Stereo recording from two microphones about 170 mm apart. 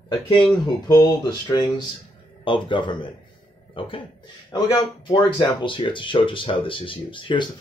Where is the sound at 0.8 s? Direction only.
25° left (ahead or behind).